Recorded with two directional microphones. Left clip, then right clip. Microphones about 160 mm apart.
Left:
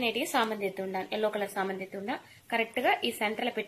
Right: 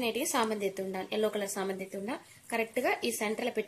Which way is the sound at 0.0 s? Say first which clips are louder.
Left 2 dB; 40° right (ahead or behind).